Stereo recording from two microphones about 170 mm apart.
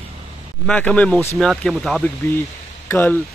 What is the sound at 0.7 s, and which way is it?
Speech, 5° left (ahead or behind).